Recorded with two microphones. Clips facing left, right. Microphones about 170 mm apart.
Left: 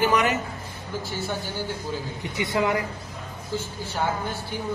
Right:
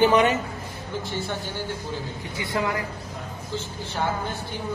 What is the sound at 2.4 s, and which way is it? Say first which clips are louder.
Speech: left 3 dB; 20° left (ahead or behind).